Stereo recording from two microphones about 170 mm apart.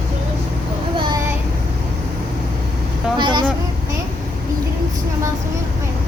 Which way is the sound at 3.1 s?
25° right (ahead or behind).